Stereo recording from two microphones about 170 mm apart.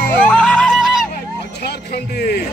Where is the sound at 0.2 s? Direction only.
5° left (ahead or behind).